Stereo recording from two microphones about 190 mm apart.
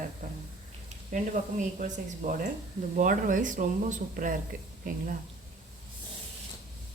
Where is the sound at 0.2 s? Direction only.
45° right (ahead or behind).